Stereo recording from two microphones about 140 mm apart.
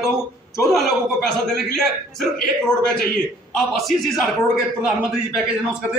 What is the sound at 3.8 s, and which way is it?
Speech, centre (ahead or behind).